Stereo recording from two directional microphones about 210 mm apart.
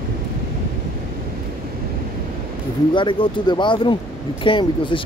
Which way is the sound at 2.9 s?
25° left (ahead or behind).